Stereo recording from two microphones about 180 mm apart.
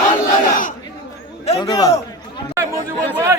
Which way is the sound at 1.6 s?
20° left (ahead or behind).